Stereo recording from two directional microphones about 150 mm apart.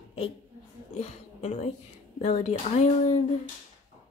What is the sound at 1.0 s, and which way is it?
A woman's voice, 50° left (ahead or behind).